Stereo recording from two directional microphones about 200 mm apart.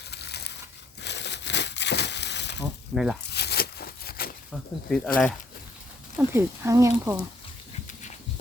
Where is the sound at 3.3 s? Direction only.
55° left (ahead or behind).